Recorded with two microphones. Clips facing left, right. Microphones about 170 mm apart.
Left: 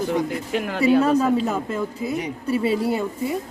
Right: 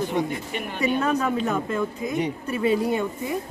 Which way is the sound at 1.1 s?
5° left (ahead or behind).